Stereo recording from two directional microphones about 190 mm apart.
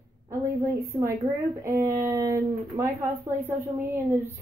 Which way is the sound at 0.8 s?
15° right (ahead or behind).